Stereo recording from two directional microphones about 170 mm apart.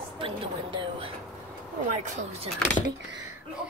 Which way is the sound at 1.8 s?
40° right (ahead or behind).